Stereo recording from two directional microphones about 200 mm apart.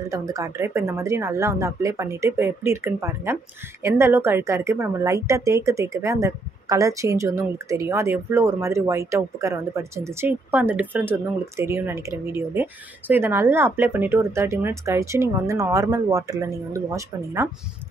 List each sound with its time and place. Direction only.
0.1 s speech: 15° right (ahead or behind)